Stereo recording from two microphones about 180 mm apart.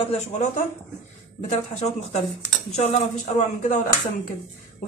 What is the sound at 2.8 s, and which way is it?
Speech, 40° left (ahead or behind).